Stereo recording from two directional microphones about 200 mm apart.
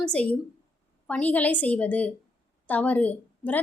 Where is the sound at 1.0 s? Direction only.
5° left (ahead or behind).